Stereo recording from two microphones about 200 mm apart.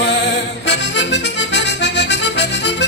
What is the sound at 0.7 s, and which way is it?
Accordion, 60° left (ahead or behind).